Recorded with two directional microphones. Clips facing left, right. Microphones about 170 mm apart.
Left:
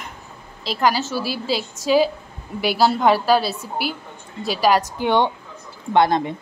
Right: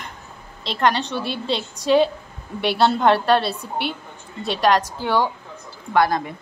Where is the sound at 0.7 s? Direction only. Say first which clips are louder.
Even; 5° left (ahead or behind).